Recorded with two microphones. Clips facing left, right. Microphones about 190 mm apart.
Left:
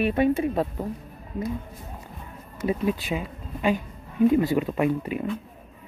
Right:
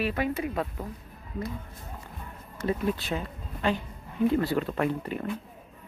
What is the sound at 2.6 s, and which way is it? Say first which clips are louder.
Speech: left 3 dB; 10° left (ahead or behind).